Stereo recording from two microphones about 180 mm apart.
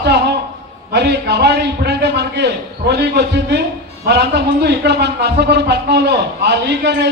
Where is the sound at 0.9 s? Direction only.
70° right (ahead or behind).